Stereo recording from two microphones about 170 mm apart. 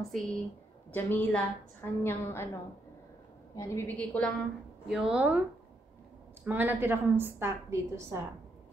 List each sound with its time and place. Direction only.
0.1 s a woman's voice: centre (ahead or behind)
4.8 s speech: 5° right (ahead or behind)
6.4 s a woman's voice: 10° right (ahead or behind)